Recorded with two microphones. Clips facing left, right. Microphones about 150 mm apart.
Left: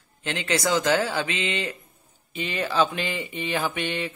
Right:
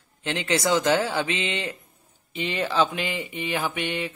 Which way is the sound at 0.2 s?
20° right (ahead or behind).